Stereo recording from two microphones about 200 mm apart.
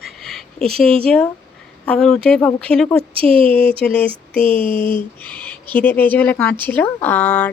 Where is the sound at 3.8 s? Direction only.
5° left (ahead or behind).